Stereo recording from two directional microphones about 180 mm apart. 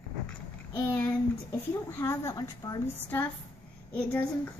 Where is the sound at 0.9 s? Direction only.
10° left (ahead or behind).